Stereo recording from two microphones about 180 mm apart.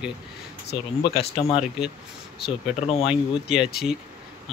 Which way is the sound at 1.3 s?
35° left (ahead or behind).